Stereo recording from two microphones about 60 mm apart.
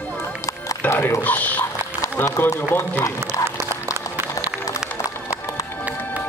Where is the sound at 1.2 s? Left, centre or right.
Left.